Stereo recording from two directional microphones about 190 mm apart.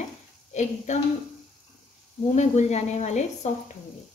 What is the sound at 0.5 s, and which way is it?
Speech, 40° left (ahead or behind).